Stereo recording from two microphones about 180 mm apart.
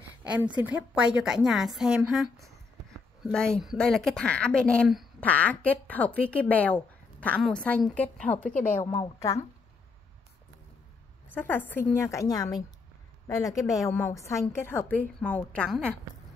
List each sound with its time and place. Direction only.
0.2 s a sound: 10° right (ahead or behind)
0.6 s a woman's voice: 10° right (ahead or behind); by 9.4 s 20° left (ahead or behind)
11.3 s a woman's voice: 10° left (ahead or behind)